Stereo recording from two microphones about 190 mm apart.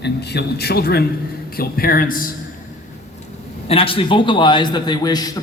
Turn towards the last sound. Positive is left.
turn(degrees=20)  # may be behind; listen again after turning